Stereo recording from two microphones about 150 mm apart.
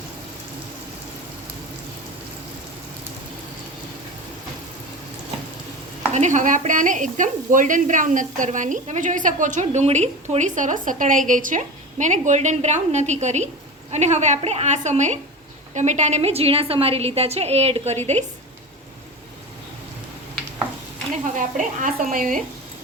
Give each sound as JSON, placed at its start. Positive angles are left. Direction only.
{"t": 6.1, "sound": "a woman's voice", "side_deg": -55}
{"t": 21.3, "sound": "a woman's voice", "side_deg": -60}